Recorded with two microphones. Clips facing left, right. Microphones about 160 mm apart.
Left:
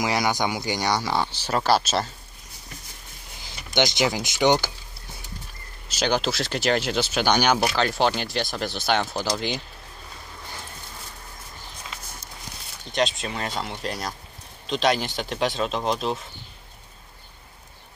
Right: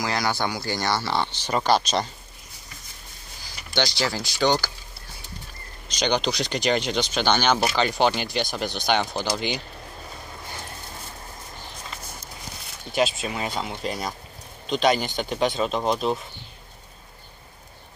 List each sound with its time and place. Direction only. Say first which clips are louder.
0.0 s speech: left 2 dB; 20° left (ahead or behind)
3.3 s speech: left 3 dB; 20° left (ahead or behind)
5.9 s speech: even; 5° left (ahead or behind)
7.6 s speech: right 1 dB; centre (ahead or behind)
12.9 s speech: right 1 dB; centre (ahead or behind)